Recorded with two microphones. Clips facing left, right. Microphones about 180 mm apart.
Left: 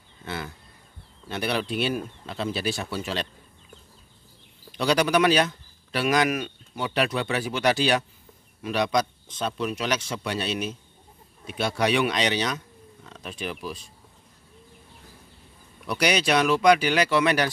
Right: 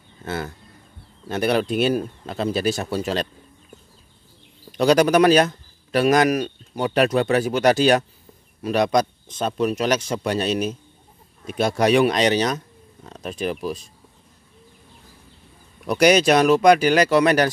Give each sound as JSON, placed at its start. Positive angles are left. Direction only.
{"t": 0.2, "sound": "speech", "side_deg": -45}
{"t": 4.7, "sound": "speech", "side_deg": -45}
{"t": 15.9, "sound": "speech", "side_deg": -45}